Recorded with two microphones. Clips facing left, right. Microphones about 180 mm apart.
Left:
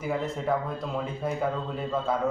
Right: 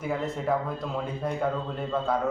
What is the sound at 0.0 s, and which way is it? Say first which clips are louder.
Speech: even; centre (ahead or behind).